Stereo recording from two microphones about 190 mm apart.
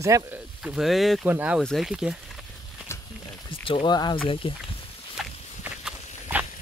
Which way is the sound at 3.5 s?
25° left (ahead or behind).